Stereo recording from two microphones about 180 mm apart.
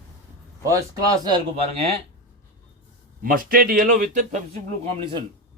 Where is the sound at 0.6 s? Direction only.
20° right (ahead or behind).